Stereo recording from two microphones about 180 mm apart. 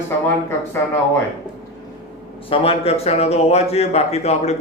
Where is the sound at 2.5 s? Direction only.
30° left (ahead or behind).